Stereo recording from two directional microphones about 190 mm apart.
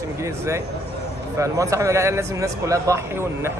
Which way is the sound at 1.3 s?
15° right (ahead or behind).